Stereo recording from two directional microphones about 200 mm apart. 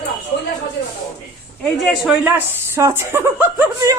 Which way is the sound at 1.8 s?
Centre (ahead or behind).